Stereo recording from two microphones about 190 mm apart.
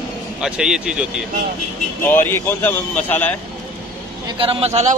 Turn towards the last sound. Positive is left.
turn(degrees=-35)  # may be behind; listen again after turning